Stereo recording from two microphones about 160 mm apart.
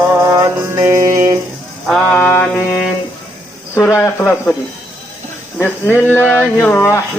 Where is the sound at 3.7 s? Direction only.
15° left (ahead or behind).